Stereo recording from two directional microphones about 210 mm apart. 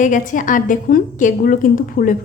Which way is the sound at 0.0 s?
40° left (ahead or behind).